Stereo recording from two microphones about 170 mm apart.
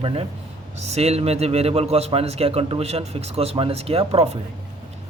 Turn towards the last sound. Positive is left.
turn(degrees=-35)  # may be behind; listen again after turning